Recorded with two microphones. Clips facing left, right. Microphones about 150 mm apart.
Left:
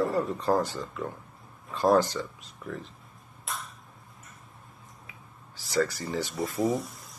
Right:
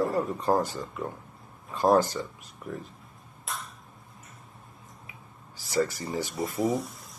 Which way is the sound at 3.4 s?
Centre (ahead or behind).